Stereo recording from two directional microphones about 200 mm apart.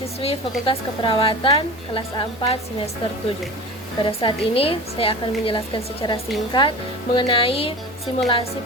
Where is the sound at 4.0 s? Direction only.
25° left (ahead or behind).